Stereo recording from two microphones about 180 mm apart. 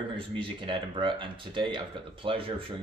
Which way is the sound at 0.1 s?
30° right (ahead or behind).